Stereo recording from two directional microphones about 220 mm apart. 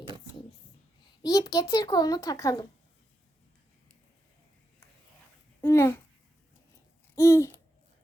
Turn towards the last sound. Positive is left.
turn(degrees=10)  # may be behind; listen again after turning